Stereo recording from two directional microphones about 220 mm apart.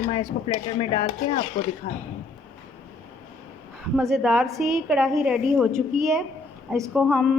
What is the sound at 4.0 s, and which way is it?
A woman's voice, centre (ahead or behind).